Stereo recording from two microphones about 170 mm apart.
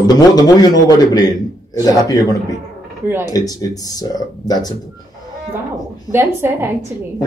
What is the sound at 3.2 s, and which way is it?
Speech, 20° left (ahead or behind).